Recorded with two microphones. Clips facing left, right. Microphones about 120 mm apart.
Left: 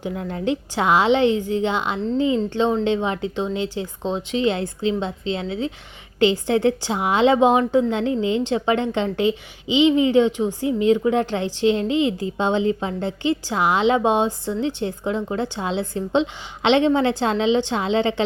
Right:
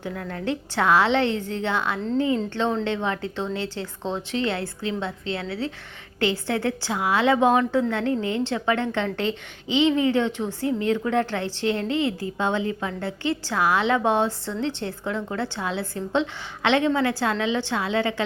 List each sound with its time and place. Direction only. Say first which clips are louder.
0.0 s a woman's voice: left 4 dB; 20° left (ahead or behind)